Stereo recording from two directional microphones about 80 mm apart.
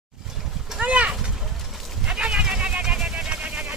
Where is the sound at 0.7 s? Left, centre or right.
Centre.